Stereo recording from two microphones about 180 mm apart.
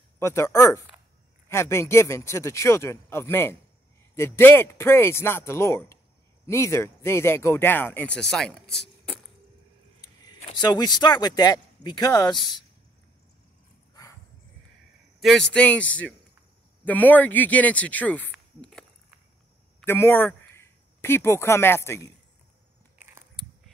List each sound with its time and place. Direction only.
0.2 s speech: 15° left (ahead or behind)
10.0 s speech: 25° left (ahead or behind)
15.1 s speech: centre (ahead or behind)
19.8 s speech: 10° left (ahead or behind)